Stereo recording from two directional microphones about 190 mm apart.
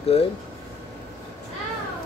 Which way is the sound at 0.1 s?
30° left (ahead or behind).